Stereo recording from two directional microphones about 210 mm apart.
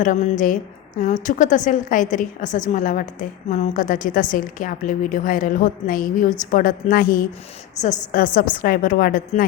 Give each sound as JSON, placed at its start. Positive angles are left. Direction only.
{"t": 0.0, "sound": "a woman's voice", "side_deg": 35}
{"t": 7.8, "sound": "a woman's voice", "side_deg": 15}
{"t": 8.1, "sound": "a woman's voice", "side_deg": 40}